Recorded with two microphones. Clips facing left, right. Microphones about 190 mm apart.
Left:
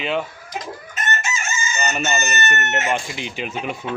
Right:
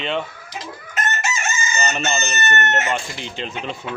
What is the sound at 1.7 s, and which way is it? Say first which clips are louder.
Chicken: left 1 dB; 5° left (ahead or behind).